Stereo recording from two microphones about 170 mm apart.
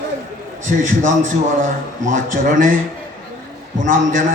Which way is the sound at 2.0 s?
50° right (ahead or behind).